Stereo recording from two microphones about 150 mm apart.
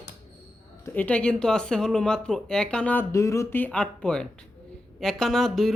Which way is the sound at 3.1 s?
20° left (ahead or behind).